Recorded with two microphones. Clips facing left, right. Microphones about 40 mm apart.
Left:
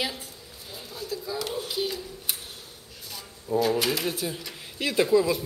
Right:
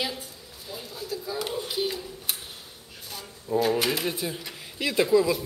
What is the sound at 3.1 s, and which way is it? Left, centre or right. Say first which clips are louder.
Speech: even; centre.